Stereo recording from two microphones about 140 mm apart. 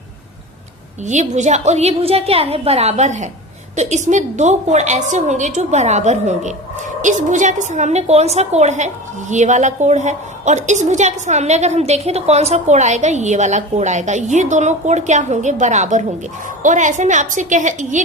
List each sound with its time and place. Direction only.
1.0 s a woman's voice: 60° right (ahead or behind)